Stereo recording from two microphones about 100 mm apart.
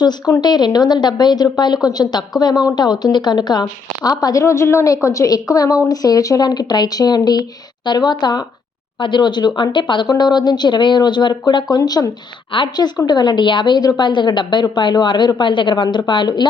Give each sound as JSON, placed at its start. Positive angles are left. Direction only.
{"t": 0.4, "sound": "a woman's voice", "side_deg": 45}
{"t": 11.8, "sound": "a woman's voice", "side_deg": 35}
{"t": 12.5, "sound": "a woman's voice", "side_deg": 55}